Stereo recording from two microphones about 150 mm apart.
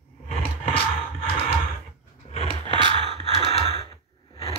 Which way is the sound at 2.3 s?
45° left (ahead or behind).